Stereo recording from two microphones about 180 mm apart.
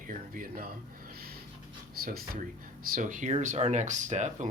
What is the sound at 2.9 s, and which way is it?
Speech, 45° right (ahead or behind).